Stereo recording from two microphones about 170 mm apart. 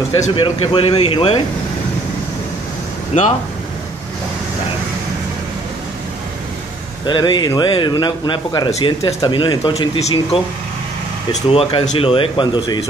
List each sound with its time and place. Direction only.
0.1 s speech: 35° left (ahead or behind)
7.1 s speech: 25° left (ahead or behind)
11.5 s speech: 35° left (ahead or behind)